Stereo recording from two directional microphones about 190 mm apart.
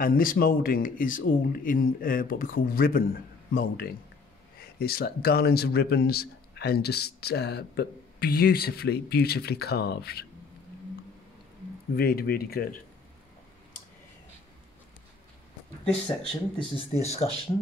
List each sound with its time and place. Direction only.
0.0 s a man's voice: 50° left (ahead or behind)
12.0 s speech: 55° left (ahead or behind)
15.8 s speech: 5° left (ahead or behind)
16.5 s speech: 30° left (ahead or behind)